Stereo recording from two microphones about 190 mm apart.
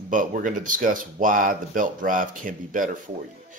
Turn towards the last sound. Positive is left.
turn(degrees=-45)  # may be behind; listen again after turning